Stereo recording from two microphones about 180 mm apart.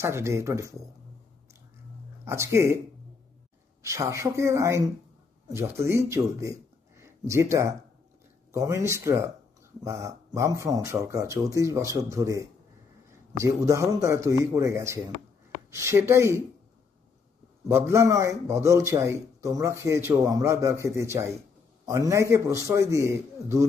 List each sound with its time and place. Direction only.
0.0 s a man's voice: 15° right (ahead or behind)
2.2 s a man's voice: 15° right (ahead or behind)
3.8 s a man's voice: 15° right (ahead or behind)
17.6 s a man's voice: 15° right (ahead or behind)